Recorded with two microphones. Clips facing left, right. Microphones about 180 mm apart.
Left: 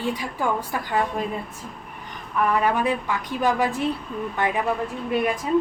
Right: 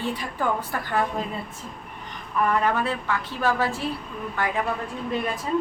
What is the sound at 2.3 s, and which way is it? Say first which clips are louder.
A woman's voice: left 1 dB; 10° left (ahead or behind).